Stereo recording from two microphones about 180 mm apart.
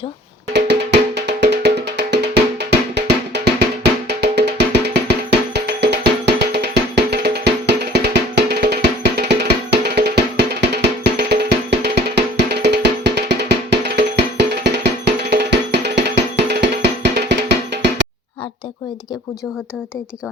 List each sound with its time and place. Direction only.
0.5 s music: 70° right (ahead or behind)